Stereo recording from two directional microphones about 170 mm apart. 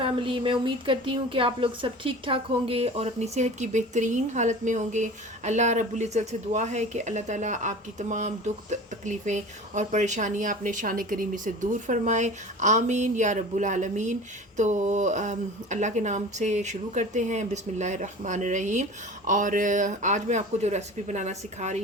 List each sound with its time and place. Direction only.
0.0 s speech: 30° right (ahead or behind)